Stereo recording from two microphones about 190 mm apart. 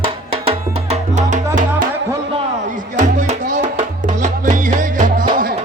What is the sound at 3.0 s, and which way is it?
Music, 40° right (ahead or behind).